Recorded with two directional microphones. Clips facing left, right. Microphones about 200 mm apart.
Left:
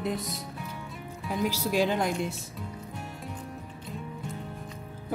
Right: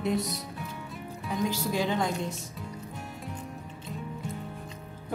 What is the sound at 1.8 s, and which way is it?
Speech, 10° left (ahead or behind).